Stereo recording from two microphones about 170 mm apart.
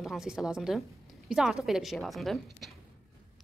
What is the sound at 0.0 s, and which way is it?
Speech, centre (ahead or behind).